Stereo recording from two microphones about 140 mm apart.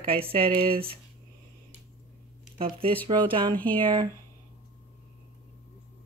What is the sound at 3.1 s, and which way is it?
Speech, 35° right (ahead or behind).